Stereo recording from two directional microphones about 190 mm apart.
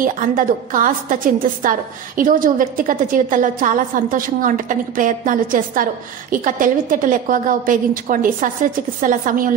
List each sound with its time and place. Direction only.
0.0 s a woman's voice: 45° right (ahead or behind)